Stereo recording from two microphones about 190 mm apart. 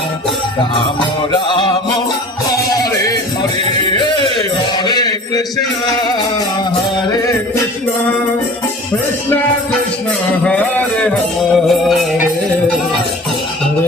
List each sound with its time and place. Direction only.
1.5 s music: 25° left (ahead or behind)
3.8 s music: 25° left (ahead or behind)
4.9 s a sound: 20° left (ahead or behind)
10.4 s music: 5° left (ahead or behind)